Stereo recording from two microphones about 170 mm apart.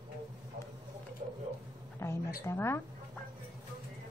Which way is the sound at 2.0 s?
15° left (ahead or behind).